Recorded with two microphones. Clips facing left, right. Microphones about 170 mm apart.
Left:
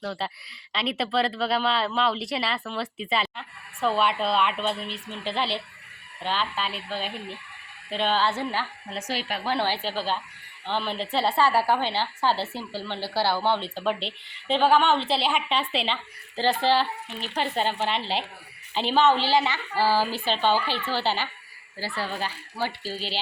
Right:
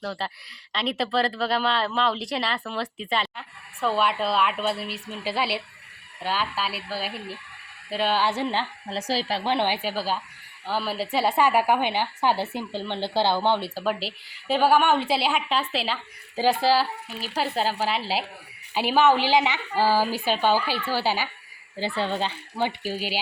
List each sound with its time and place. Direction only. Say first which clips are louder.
0.0 s a woman's voice: even; centre (ahead or behind); by 13.7 s 15° right (ahead or behind)
13.7 s a woman's voice: even; 5° right (ahead or behind)
21.8 s speech: right 4 dB; 20° right (ahead or behind)